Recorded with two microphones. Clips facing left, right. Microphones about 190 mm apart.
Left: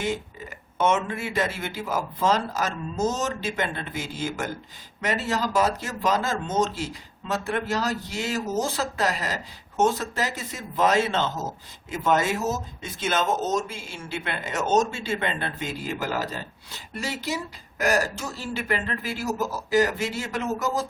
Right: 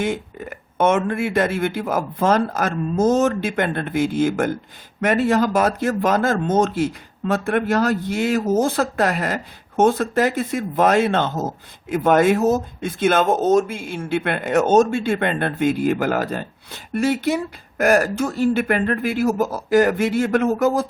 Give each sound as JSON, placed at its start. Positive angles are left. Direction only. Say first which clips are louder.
{"t": 0.0, "sound": "speech", "louder": "right 5 dB", "side_deg": -55}